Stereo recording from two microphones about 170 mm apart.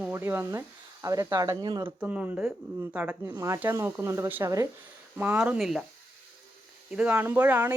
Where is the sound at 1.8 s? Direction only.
5° right (ahead or behind).